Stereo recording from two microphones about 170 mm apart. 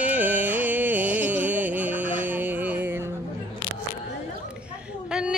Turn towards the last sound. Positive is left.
turn(degrees=-5)  # may be behind; listen again after turning